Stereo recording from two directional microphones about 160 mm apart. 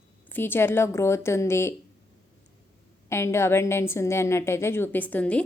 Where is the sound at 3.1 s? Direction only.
15° left (ahead or behind).